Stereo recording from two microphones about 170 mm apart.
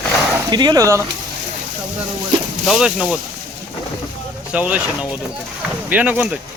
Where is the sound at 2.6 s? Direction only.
5° right (ahead or behind).